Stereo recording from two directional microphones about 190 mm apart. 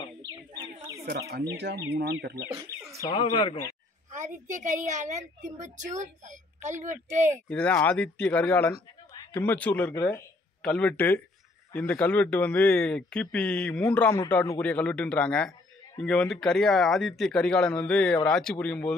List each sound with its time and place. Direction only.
1.0 s speech: 60° right (ahead or behind)
2.5 s bird: 15° right (ahead or behind)
3.2 s speech: 30° left (ahead or behind)
4.1 s a woman's voice: 40° right (ahead or behind)
7.4 s a man's voice: 5° left (ahead or behind)